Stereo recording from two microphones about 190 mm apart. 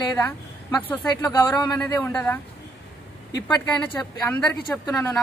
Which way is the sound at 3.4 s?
5° left (ahead or behind).